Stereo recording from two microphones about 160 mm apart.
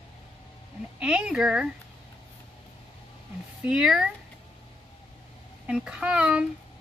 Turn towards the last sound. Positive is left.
turn(degrees=-5)  # may be behind; listen again after turning